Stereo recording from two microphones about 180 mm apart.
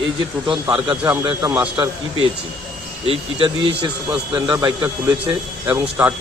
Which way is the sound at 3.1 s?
30° right (ahead or behind).